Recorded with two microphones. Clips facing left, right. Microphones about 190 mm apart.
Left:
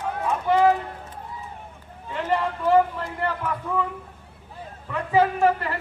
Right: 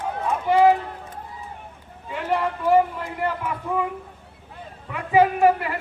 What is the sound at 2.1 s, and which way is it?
A man's voice, 10° right (ahead or behind).